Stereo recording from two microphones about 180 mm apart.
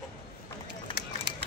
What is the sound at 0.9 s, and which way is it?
Run, 70° right (ahead or behind).